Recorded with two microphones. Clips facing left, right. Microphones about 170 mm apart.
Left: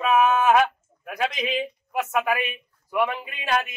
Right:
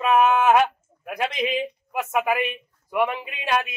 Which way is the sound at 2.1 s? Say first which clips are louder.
Right 3 dB; 10° right (ahead or behind).